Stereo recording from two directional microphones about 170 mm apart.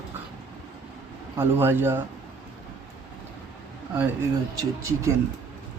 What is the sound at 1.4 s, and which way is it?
Speech, 15° right (ahead or behind).